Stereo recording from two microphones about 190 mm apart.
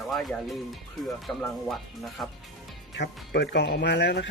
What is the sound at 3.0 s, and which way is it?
Speech, 60° left (ahead or behind).